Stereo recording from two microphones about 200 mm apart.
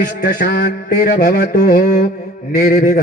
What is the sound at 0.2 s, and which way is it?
Mantra, 50° left (ahead or behind).